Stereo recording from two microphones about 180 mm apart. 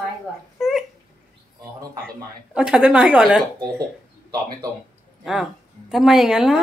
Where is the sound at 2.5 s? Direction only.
5° right (ahead or behind).